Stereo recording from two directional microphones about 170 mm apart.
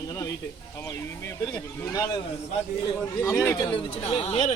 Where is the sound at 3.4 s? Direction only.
20° left (ahead or behind).